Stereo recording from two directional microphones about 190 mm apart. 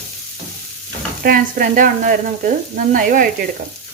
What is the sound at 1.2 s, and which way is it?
Sizzle, 45° right (ahead or behind).